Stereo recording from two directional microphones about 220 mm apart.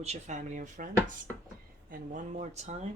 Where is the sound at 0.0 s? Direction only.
30° right (ahead or behind).